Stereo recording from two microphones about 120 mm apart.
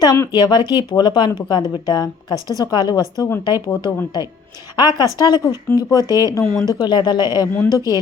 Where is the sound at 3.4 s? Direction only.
35° left (ahead or behind).